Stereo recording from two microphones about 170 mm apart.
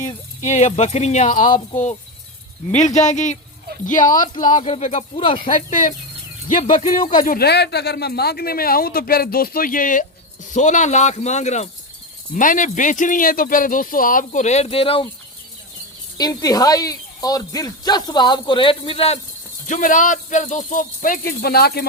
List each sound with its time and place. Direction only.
0.0 s speech: 45° left (ahead or behind)
2.8 s speech: 45° left (ahead or behind)
4.4 s speech: 30° left (ahead or behind); by 7.1 s 50° left (ahead or behind)
7.3 s speech: 70° left (ahead or behind); by 15.0 s 35° left (ahead or behind)
16.1 s speech: 25° left (ahead or behind)
19.6 s speech: 50° left (ahead or behind); by 21.8 s 65° left (ahead or behind)